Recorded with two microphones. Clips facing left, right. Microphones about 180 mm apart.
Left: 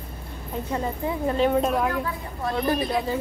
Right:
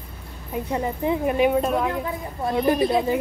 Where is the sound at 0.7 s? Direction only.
20° right (ahead or behind).